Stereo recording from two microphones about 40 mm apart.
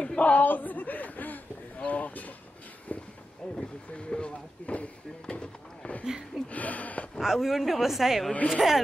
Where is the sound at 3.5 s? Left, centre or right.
Left.